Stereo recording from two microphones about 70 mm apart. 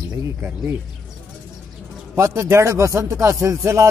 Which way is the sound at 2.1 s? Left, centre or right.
Right.